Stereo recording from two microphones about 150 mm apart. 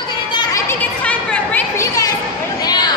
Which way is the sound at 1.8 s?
25° left (ahead or behind).